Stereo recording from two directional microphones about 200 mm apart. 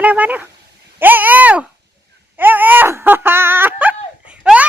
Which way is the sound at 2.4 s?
10° right (ahead or behind).